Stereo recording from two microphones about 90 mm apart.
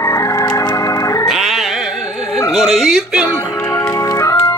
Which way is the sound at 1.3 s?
5° right (ahead or behind).